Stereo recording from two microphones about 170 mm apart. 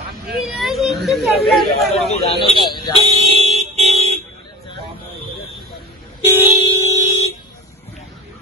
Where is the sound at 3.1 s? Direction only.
35° right (ahead or behind).